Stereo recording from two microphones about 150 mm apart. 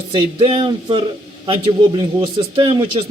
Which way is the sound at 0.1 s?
35° right (ahead or behind).